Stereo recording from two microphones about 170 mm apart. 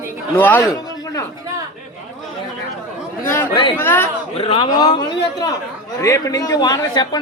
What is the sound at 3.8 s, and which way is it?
Speech, 15° left (ahead or behind).